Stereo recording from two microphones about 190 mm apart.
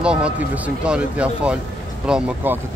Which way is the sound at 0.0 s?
5° right (ahead or behind).